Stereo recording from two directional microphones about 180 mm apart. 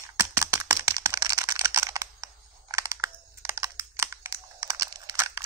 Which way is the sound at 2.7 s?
15° right (ahead or behind).